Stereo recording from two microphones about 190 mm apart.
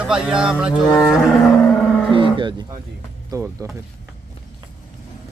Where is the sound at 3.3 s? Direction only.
15° right (ahead or behind).